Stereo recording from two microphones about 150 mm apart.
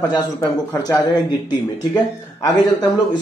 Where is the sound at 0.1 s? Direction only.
25° left (ahead or behind).